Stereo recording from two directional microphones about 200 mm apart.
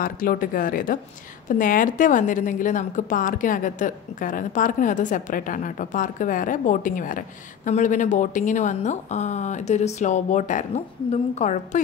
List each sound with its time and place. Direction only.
0.0 s a woman's voice: 45° left (ahead or behind)